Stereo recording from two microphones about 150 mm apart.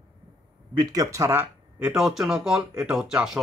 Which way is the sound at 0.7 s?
20° right (ahead or behind).